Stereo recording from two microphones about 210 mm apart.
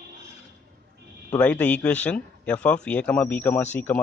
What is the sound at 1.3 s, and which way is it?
Speech, 5° left (ahead or behind).